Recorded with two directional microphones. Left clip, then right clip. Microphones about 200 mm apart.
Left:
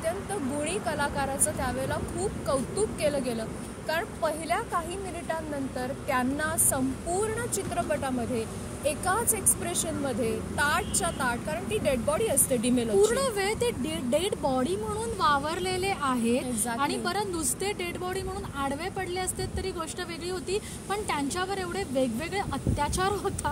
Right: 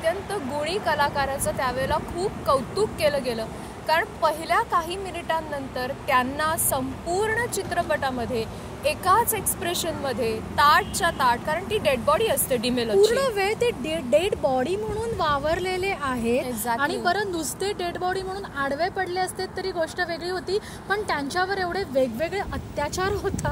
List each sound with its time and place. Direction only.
0.0 s speech: centre (ahead or behind)
3.0 s a woman's voice: centre (ahead or behind)
13.1 s speech: 30° left (ahead or behind)
16.4 s a woman's voice: centre (ahead or behind)
16.8 s speech: 25° left (ahead or behind)